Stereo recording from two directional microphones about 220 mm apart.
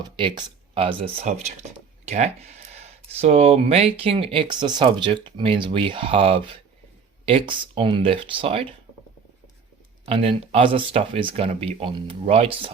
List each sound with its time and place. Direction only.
0.0 s speech: 20° right (ahead or behind)
10.1 s speech: 25° right (ahead or behind)